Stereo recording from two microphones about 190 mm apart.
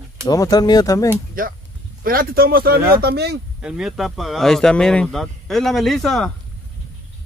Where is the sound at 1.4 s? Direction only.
50° right (ahead or behind).